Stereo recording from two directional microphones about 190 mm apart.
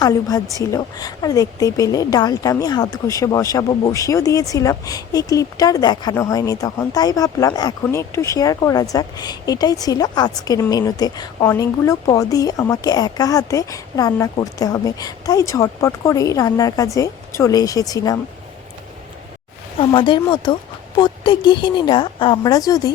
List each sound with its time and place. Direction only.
0.0 s a woman's voice: 20° left (ahead or behind)
19.8 s a woman's voice: 25° left (ahead or behind)